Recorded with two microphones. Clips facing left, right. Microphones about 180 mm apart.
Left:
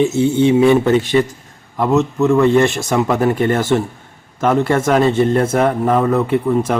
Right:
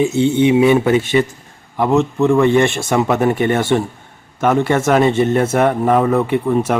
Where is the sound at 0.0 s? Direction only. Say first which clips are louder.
Even; 20° right (ahead or behind).